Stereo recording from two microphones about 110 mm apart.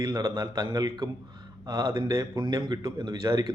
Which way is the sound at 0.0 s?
35° right (ahead or behind).